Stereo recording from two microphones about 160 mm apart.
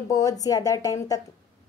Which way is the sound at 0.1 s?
20° left (ahead or behind).